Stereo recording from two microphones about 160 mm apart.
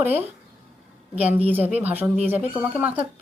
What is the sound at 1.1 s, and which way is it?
A woman's voice, 10° right (ahead or behind).